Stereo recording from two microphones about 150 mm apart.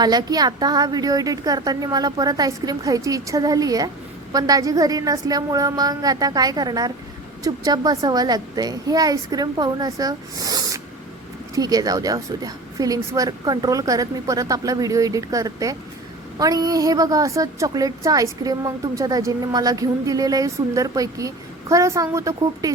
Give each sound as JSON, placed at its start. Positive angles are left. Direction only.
{"t": 0.0, "sound": "a woman's voice", "side_deg": -25}